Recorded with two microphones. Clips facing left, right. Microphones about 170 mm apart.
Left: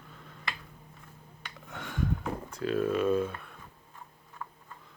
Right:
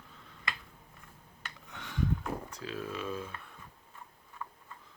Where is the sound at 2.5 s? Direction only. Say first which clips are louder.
Left 10 dB; 55° left (ahead or behind).